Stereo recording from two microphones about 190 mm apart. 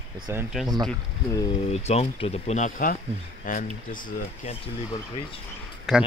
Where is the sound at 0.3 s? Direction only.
10° right (ahead or behind).